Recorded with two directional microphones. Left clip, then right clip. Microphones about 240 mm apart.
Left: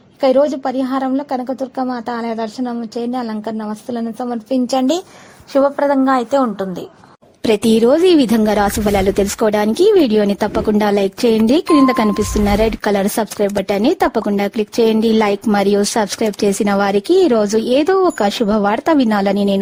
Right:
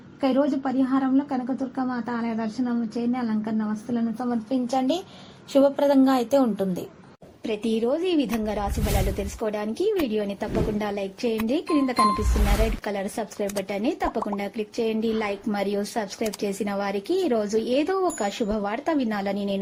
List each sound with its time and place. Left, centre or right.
0.2 s a woman's voice: left
5.5 s a woman's voice: centre
7.4 s speech: left